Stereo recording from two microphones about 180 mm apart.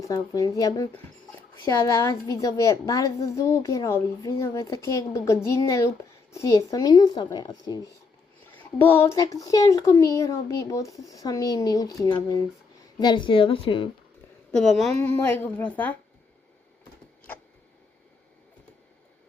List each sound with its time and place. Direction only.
0.1 s a child's voice: 20° left (ahead or behind)
14.5 s a woman's voice: centre (ahead or behind)